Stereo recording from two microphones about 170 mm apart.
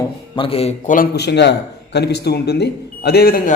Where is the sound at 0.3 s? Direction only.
35° left (ahead or behind).